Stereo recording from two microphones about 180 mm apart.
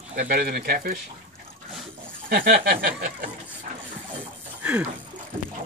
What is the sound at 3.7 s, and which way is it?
Engine, 50° right (ahead or behind).